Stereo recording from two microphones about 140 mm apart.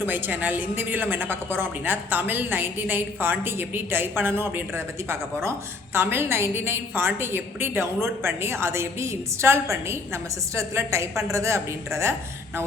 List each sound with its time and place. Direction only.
0.0 s a woman's voice: 15° right (ahead or behind)